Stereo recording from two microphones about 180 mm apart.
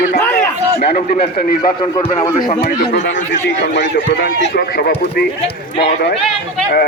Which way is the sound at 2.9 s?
90° left.